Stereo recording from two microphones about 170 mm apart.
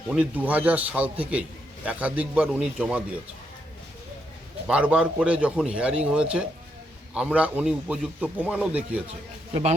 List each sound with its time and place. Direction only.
0.1 s a man's voice: 10° right (ahead or behind)
4.7 s a man's voice: 5° right (ahead or behind)
9.5 s a man's voice: 35° right (ahead or behind)